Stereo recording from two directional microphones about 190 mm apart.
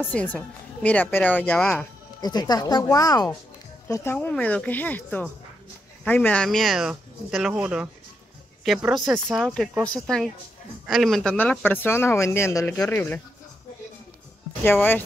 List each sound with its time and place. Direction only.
0.0 s speech: 10° left (ahead or behind)
2.2 s speech: 20° left (ahead or behind)
14.6 s speech: 10° left (ahead or behind)